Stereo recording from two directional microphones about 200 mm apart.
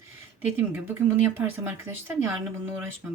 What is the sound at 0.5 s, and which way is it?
Speech, 10° right (ahead or behind).